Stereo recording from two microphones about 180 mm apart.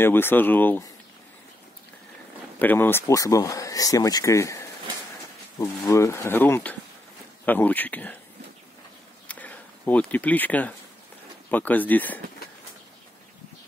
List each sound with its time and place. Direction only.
0.0 s speech: 10° left (ahead or behind)
2.6 s speech: 10° left (ahead or behind)
9.3 s a sound: 10° left (ahead or behind)
11.5 s speech: 10° left (ahead or behind)